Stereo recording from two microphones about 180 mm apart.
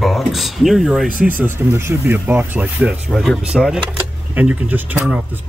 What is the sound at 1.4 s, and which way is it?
Speech, 15° right (ahead or behind).